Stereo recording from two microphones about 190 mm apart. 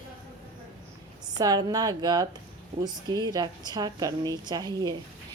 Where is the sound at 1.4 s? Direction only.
20° right (ahead or behind).